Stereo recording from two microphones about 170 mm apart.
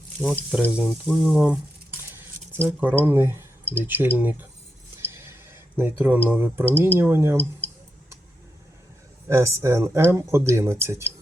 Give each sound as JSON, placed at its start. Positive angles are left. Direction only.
{"t": 0.2, "sound": "speech", "side_deg": 0}
{"t": 2.0, "sound": "a sound", "side_deg": -15}
{"t": 3.0, "sound": "speech", "side_deg": -15}
{"t": 4.9, "sound": "a sound", "side_deg": -15}
{"t": 6.7, "sound": "speech", "side_deg": -15}
{"t": 9.3, "sound": "speech", "side_deg": -15}